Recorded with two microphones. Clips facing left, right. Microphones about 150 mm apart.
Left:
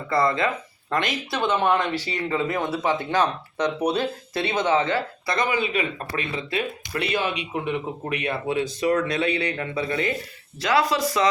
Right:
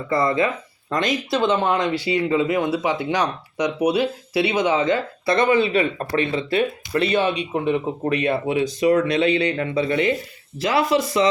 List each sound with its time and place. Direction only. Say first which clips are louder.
0.1 s speech: right 2 dB; 15° right (ahead or behind)